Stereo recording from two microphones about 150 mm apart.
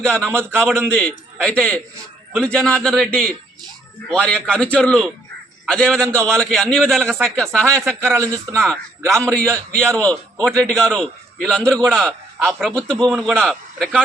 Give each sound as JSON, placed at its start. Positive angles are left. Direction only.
{"t": 0.0, "sound": "a man's voice", "side_deg": 5}
{"t": 8.0, "sound": "a man's voice", "side_deg": -20}
{"t": 8.5, "sound": "a man's voice", "side_deg": 5}
{"t": 9.5, "sound": "a man's voice", "side_deg": -20}
{"t": 10.4, "sound": "a man's voice", "side_deg": 5}
{"t": 13.1, "sound": "a man's voice", "side_deg": -5}